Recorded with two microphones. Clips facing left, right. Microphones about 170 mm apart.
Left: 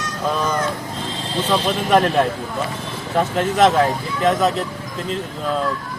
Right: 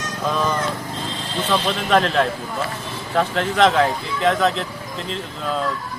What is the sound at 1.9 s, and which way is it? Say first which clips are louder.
Speech: left 2 dB; 15° left (ahead or behind).